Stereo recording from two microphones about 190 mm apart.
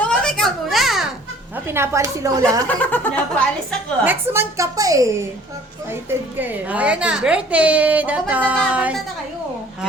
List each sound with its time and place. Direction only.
0.0 s a sound: 5° left (ahead or behind)
1.5 s a woman's voice: 10° right (ahead or behind)
2.6 s speech: 10° left (ahead or behind)
4.0 s a woman's voice: 10° right (ahead or behind)
6.4 s a woman's voice: 10° right (ahead or behind)